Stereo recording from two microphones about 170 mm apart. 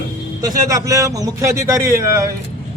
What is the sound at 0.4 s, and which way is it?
A man's voice, 20° right (ahead or behind).